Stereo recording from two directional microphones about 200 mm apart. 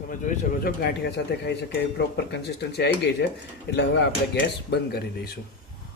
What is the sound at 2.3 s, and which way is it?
Speech, 55° left (ahead or behind).